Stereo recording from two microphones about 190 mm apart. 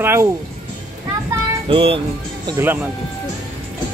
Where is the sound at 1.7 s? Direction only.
30° right (ahead or behind).